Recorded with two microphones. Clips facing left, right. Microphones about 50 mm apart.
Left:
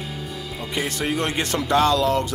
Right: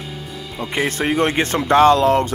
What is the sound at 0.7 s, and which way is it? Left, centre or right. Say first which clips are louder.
Speech: right 6 dB; right.